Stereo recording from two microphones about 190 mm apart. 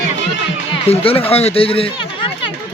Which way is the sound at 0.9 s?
30° left (ahead or behind).